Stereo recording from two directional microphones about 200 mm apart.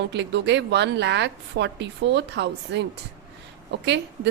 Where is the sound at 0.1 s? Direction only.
60° right (ahead or behind).